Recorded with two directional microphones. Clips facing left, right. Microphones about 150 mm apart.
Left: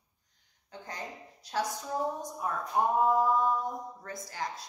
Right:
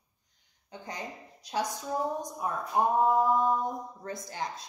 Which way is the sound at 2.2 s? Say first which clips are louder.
Right 1 dB; 15° right (ahead or behind).